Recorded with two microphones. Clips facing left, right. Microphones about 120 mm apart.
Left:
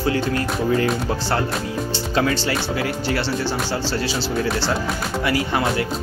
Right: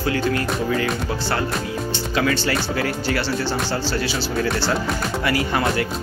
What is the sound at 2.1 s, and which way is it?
Speech, 25° left (ahead or behind).